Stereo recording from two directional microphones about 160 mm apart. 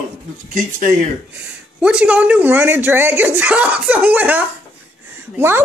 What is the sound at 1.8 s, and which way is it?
Speech, 5° right (ahead or behind).